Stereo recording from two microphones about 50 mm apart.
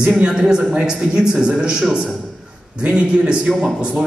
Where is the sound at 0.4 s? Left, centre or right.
Centre.